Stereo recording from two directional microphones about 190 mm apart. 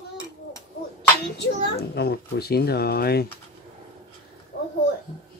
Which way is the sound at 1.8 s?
55° left (ahead or behind).